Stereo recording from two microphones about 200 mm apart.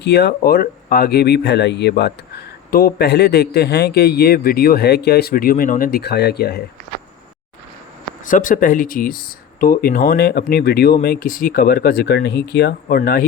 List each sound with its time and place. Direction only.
0.0 s speech: 55° left (ahead or behind)
8.2 s speech: 40° left (ahead or behind)